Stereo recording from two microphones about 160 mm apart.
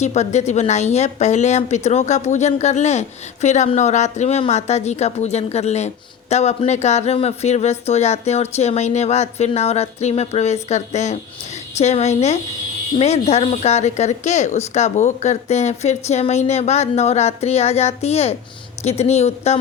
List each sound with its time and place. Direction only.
0.0 s speech: 45° left (ahead or behind)